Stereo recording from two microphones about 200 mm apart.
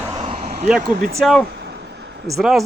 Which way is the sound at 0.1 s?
30° right (ahead or behind).